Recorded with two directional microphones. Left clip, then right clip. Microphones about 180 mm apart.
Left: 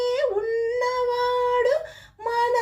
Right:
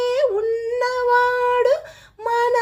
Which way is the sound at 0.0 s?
30° right (ahead or behind).